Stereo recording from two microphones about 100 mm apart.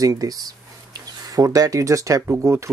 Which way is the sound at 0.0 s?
35° right (ahead or behind).